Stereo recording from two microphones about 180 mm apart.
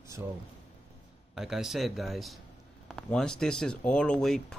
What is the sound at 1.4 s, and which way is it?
Speech, centre (ahead or behind).